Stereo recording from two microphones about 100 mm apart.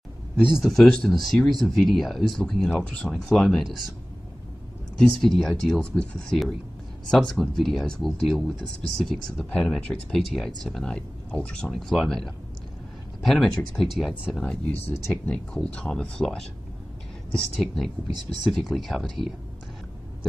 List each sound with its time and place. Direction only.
0.4 s speech: 5° right (ahead or behind)
0.7 s speech: 5° left (ahead or behind)
2.7 s speech: 15° left (ahead or behind)
3.1 s speech: 5° left (ahead or behind)
5.4 s speech: 5° left (ahead or behind)
17.3 s speech: 5° left (ahead or behind)